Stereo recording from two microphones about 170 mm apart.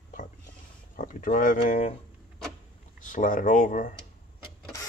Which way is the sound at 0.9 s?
55° left (ahead or behind).